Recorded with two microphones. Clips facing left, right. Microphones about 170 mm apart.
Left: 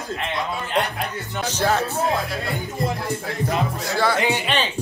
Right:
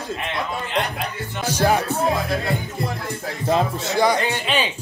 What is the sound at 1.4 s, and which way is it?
Speech, 10° right (ahead or behind).